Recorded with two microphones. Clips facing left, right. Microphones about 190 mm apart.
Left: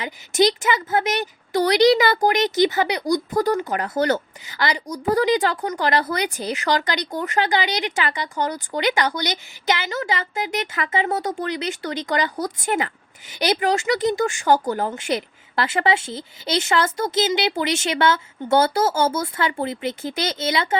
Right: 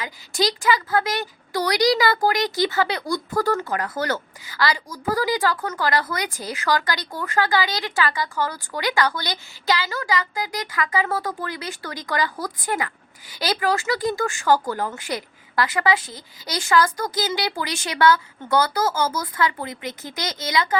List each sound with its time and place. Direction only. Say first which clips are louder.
0.0 s a woman's voice: left 5 dB; 20° left (ahead or behind)